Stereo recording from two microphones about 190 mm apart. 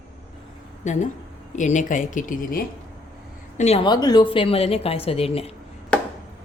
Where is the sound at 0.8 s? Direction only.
40° left (ahead or behind).